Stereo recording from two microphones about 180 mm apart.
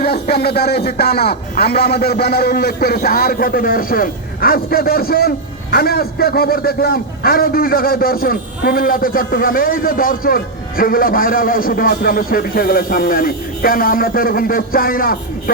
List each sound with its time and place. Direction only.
0.0 s a man's voice: 60° left (ahead or behind)